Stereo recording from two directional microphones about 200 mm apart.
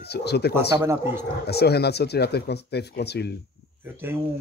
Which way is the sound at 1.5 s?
55° left (ahead or behind).